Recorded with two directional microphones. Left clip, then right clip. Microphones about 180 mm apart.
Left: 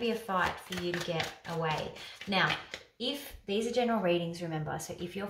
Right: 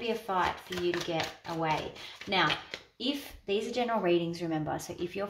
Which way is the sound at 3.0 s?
35° right (ahead or behind).